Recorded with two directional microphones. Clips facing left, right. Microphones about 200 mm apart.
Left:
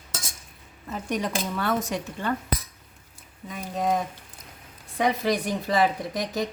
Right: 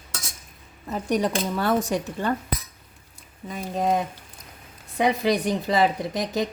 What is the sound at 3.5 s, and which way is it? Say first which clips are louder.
Speech: right 2 dB; 25° right (ahead or behind).